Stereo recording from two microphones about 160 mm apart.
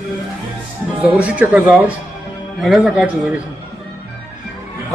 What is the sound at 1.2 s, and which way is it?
A man's voice, 10° right (ahead or behind).